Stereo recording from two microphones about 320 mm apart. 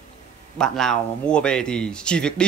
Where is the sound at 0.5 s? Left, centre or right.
Centre.